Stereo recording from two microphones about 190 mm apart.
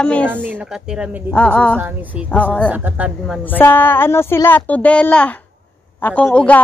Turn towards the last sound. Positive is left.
turn(degrees=5)  # may be behind; listen again after turning